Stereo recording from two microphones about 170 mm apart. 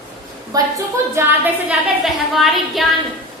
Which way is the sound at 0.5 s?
20° right (ahead or behind).